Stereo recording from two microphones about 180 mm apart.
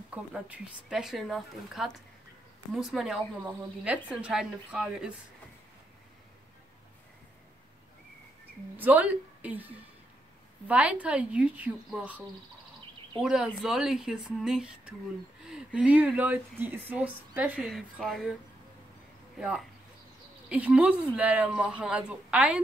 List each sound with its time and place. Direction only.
0.1 s speech: 5° right (ahead or behind)
8.7 s speech: 10° right (ahead or behind)
19.3 s speech: 5° right (ahead or behind)